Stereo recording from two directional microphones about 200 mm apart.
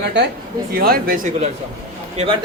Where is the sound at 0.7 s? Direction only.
50° right (ahead or behind).